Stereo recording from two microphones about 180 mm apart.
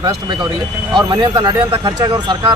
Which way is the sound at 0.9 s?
25° right (ahead or behind).